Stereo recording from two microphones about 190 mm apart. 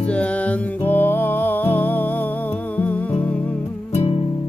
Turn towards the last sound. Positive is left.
turn(degrees=35)  # may be behind; listen again after turning